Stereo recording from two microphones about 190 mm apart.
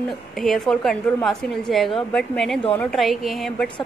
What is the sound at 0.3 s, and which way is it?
A woman's voice, centre (ahead or behind).